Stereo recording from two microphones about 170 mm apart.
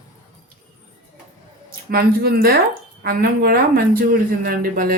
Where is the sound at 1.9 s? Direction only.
65° right (ahead or behind).